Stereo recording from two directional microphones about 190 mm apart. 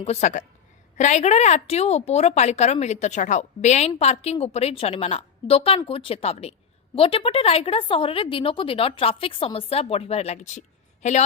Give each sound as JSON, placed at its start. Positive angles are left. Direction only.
{"t": 0.0, "sound": "a woman's voice", "side_deg": 35}